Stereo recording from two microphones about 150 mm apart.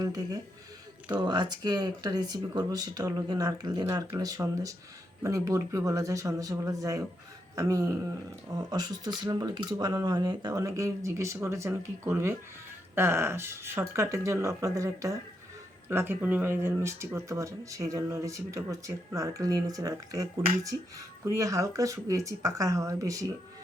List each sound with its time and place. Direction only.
0.0 s speech: 25° right (ahead or behind)
21.2 s speech: 20° right (ahead or behind)